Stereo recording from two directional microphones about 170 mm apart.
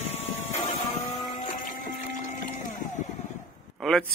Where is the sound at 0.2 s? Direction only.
40° left (ahead or behind).